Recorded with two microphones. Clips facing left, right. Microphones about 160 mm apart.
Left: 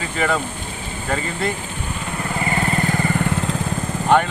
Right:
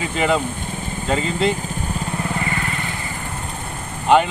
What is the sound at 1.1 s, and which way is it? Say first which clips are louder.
Speech: right 4 dB; 20° right (ahead or behind).